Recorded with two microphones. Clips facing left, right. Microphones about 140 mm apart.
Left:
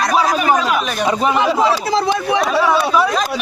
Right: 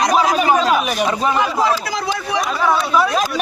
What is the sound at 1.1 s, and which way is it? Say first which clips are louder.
A man's voice: left 3 dB; 20° left (ahead or behind).